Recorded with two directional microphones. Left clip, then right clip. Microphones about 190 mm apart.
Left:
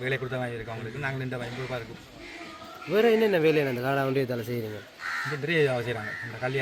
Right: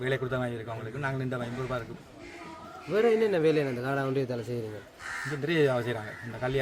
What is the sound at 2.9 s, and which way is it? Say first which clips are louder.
Speech: left 3 dB; 35° left (ahead or behind).